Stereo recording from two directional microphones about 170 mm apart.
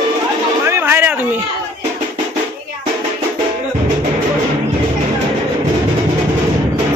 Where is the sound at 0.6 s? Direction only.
15° right (ahead or behind).